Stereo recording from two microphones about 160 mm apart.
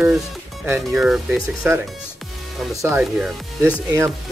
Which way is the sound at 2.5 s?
Centre (ahead or behind).